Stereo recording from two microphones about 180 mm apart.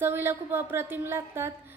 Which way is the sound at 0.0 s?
15° right (ahead or behind).